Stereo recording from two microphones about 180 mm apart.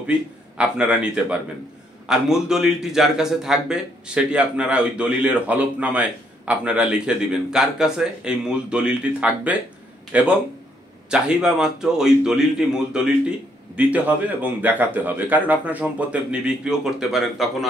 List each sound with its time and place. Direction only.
0.6 s a man's voice: 5° right (ahead or behind)